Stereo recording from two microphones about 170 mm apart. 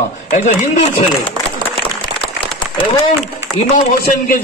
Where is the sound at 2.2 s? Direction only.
30° left (ahead or behind).